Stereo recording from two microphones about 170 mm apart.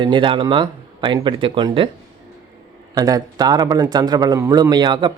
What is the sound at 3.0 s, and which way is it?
Speech, 20° right (ahead or behind).